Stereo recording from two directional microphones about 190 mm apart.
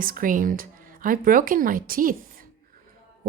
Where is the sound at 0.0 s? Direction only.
45° right (ahead or behind).